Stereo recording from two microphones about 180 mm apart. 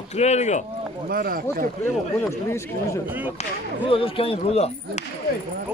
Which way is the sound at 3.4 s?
30° left (ahead or behind).